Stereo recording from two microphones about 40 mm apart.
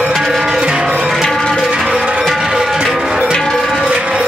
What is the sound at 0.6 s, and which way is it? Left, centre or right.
Music, right.